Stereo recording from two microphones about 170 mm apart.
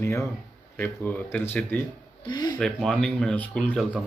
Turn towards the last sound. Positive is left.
turn(degrees=5)  # may be behind; listen again after turning